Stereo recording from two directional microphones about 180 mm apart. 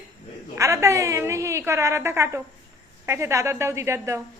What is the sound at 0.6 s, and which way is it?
A woman's voice, 15° right (ahead or behind).